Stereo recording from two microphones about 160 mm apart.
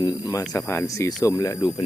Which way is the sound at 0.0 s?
25° left (ahead or behind).